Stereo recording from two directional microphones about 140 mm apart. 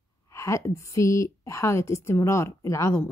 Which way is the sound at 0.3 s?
20° left (ahead or behind).